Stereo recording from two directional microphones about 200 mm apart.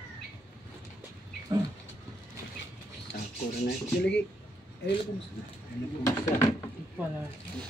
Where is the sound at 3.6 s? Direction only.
60° left (ahead or behind).